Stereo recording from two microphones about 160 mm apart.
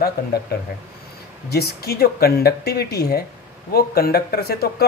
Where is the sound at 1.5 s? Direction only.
80° left.